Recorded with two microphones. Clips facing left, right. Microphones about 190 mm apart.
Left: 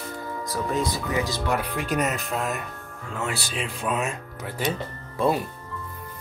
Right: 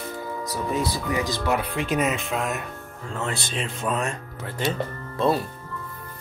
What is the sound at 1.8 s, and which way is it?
Speech, centre (ahead or behind).